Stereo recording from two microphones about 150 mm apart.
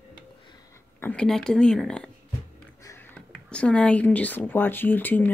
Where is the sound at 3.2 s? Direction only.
5° left (ahead or behind).